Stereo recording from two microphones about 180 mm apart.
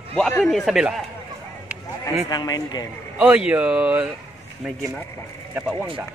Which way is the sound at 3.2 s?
5° right (ahead or behind).